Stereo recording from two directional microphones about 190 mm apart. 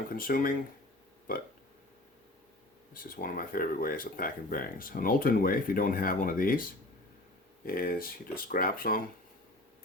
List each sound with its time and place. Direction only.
0.1 s speech: 50° left (ahead or behind)
2.9 s speech: 50° left (ahead or behind)
7.6 s speech: 50° left (ahead or behind)